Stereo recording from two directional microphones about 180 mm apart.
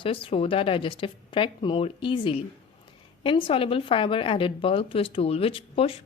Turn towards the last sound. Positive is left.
turn(degrees=30)  # may be behind; listen again after turning